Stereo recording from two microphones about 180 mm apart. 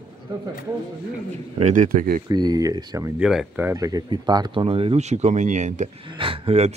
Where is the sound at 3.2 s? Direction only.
5° right (ahead or behind); by 5.9 s 40° right (ahead or behind).